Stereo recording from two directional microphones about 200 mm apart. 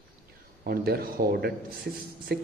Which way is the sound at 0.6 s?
50° right (ahead or behind).